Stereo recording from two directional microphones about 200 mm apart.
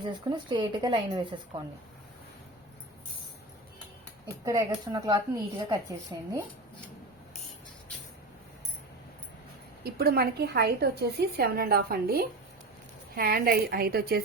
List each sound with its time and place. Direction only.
0.0 s speech: 20° right (ahead or behind)
4.4 s a woman's voice: 15° right (ahead or behind)
9.8 s a woman's voice: 50° right (ahead or behind)